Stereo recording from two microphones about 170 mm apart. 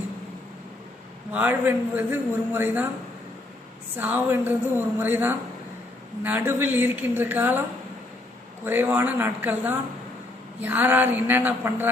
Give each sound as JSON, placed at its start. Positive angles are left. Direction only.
{"t": 1.3, "sound": "a man's voice", "side_deg": -10}
{"t": 3.9, "sound": "a man's voice", "side_deg": -10}
{"t": 8.6, "sound": "a man's voice", "side_deg": -10}